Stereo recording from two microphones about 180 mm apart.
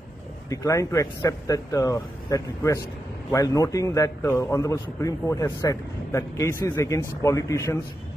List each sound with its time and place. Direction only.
0.5 s a man's voice: 20° left (ahead or behind)